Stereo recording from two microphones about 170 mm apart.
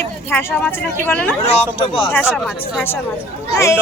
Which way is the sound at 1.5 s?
35° left (ahead or behind).